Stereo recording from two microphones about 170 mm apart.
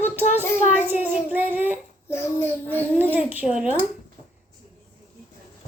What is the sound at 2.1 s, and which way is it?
Speech, 15° left (ahead or behind).